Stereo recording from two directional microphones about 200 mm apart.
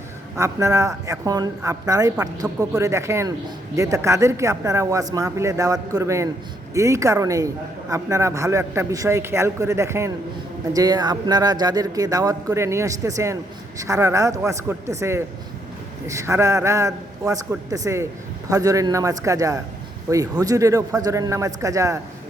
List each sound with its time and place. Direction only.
0.3 s a man's voice: 15° right (ahead or behind)